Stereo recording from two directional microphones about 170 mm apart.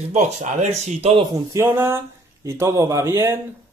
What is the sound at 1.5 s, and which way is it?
Speech, 15° right (ahead or behind).